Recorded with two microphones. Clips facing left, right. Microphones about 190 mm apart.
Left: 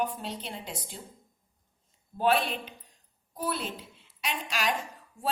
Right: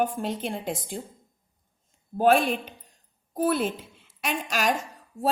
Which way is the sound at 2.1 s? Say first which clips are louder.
Right 6 dB; 45° right (ahead or behind).